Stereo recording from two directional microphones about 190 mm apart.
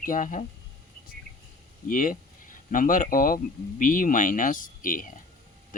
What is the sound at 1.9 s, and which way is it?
Speech, 45° left (ahead or behind).